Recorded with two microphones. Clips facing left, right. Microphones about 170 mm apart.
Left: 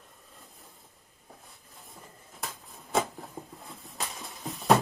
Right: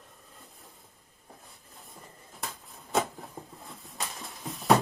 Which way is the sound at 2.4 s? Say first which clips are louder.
Even; centre (ahead or behind).